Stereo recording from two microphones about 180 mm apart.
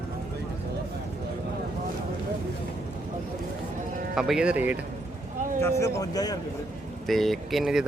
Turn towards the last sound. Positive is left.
turn(degrees=-5)  # may be behind; listen again after turning